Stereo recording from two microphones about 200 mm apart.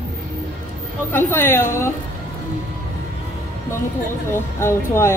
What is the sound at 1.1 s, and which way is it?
Speech, 10° left (ahead or behind).